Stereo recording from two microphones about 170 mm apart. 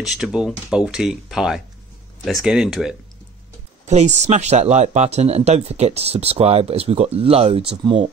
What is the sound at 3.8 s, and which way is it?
Speech, 40° right (ahead or behind).